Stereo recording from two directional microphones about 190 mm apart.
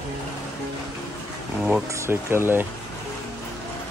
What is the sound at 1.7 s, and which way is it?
Speech, 10° right (ahead or behind).